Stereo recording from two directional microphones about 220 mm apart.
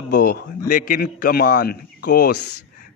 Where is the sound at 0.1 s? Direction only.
45° left (ahead or behind).